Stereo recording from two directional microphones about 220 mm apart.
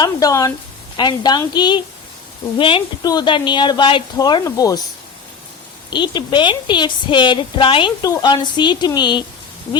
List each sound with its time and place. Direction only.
0.0 s a woman's voice: 15° left (ahead or behind)
5.9 s a woman's voice: 20° left (ahead or behind)